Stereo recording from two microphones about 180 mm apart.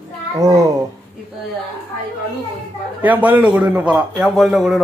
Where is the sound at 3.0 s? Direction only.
10° right (ahead or behind).